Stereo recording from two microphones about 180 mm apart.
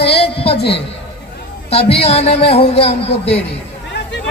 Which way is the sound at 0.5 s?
65° left (ahead or behind).